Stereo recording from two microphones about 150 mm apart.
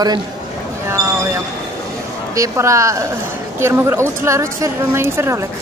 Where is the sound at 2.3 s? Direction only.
20° right (ahead or behind).